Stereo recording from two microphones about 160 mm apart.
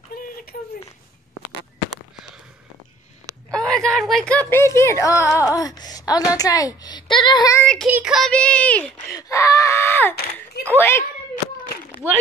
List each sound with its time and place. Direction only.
0.1 s a sound: 85° left
3.5 s speech: 5° left (ahead or behind); by 7.6 s 25° left (ahead or behind)
7.6 s child singing: 5° left (ahead or behind)
8.3 s speech: 10° left (ahead or behind)
9.1 s screaming: 20° left (ahead or behind)
10.8 s speech: 15° left (ahead or behind)